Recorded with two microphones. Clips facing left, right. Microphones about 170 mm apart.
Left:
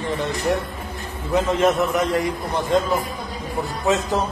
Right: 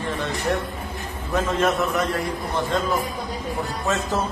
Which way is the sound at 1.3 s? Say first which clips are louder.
Left 3 dB; 20° left (ahead or behind).